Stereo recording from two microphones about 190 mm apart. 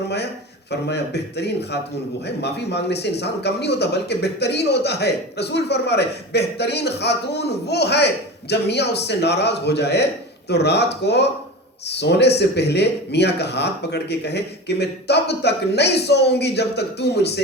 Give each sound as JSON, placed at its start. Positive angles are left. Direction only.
{"t": 0.7, "sound": "speech", "side_deg": 60}